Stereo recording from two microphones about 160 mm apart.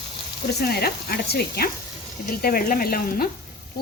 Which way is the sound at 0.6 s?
75° left (ahead or behind).